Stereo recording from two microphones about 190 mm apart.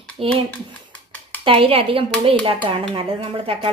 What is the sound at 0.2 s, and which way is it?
Speech, 30° right (ahead or behind).